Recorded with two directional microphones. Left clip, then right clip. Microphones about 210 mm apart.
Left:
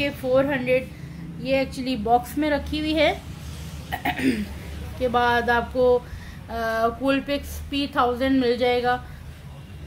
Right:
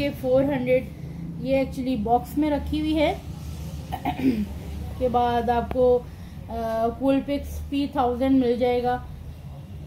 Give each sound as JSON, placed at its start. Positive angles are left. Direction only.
{"t": 0.0, "sound": "a woman's voice", "side_deg": 0}